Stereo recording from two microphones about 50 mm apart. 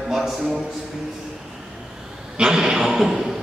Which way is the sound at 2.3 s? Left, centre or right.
Centre.